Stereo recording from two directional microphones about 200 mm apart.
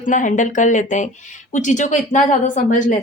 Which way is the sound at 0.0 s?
40° left (ahead or behind).